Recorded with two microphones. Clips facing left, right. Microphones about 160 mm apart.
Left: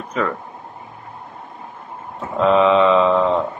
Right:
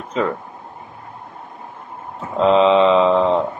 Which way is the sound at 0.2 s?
20° right (ahead or behind).